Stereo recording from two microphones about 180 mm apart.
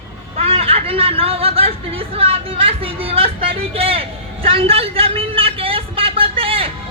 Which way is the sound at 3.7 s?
30° right (ahead or behind).